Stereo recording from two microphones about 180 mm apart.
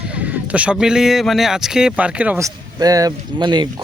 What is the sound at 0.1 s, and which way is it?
Speech, 10° right (ahead or behind).